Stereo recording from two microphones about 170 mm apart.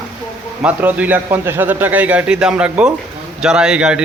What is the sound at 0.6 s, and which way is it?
A man's voice, 10° right (ahead or behind).